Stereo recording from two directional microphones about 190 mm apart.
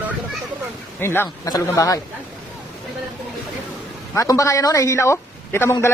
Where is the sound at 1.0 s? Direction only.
10° left (ahead or behind).